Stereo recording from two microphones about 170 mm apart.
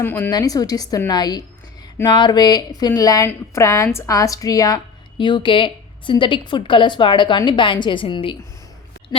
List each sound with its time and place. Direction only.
0.0 s a woman's voice: 15° left (ahead or behind); by 8.4 s 30° left (ahead or behind)